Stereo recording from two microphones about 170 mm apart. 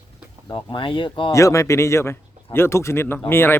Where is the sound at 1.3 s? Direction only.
20° left (ahead or behind).